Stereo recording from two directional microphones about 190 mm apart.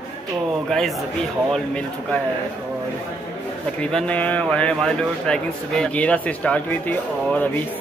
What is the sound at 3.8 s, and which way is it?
Speech, 5° left (ahead or behind).